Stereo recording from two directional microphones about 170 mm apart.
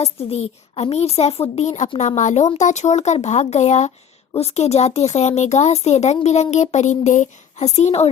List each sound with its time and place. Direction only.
0.0 s speech: 35° left (ahead or behind)